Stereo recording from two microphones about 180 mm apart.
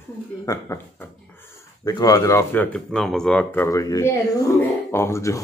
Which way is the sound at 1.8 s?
20° left (ahead or behind).